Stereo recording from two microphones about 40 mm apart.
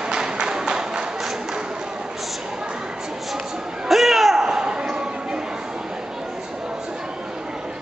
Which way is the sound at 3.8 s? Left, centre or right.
Centre.